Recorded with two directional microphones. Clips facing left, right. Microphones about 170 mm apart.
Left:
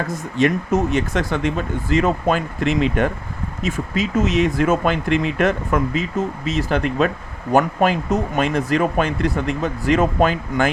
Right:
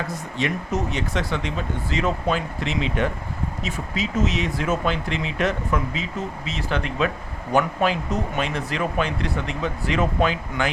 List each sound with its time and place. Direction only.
0.1 s speech: 50° left (ahead or behind)